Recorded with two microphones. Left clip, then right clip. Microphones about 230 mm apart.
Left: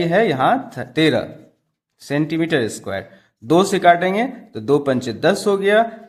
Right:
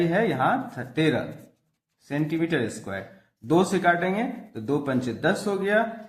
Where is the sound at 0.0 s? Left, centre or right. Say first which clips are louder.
Left 7 dB; left.